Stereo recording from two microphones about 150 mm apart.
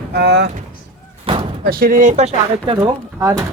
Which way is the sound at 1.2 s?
40° right (ahead or behind).